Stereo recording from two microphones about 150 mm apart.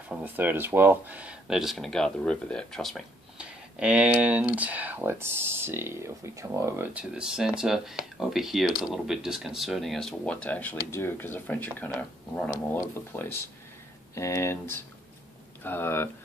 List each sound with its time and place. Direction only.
0.2 s speech: 10° right (ahead or behind); by 16.1 s 15° left (ahead or behind)